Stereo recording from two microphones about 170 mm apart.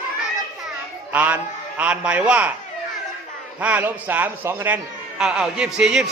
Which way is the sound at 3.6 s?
10° right (ahead or behind).